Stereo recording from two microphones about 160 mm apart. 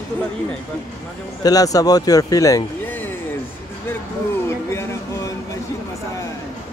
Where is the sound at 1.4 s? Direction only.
20° left (ahead or behind).